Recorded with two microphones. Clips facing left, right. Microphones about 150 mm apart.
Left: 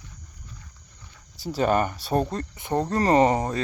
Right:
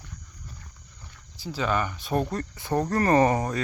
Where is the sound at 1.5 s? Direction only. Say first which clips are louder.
Left 5 dB; 45° left (ahead or behind).